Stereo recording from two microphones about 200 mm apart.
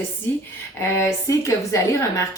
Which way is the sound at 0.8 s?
15° left (ahead or behind).